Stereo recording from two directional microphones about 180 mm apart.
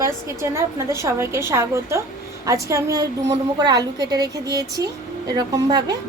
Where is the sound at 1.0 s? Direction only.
15° right (ahead or behind).